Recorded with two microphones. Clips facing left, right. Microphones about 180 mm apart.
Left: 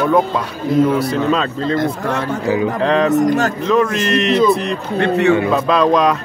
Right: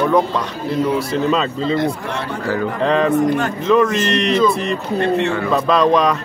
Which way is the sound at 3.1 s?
45° left (ahead or behind).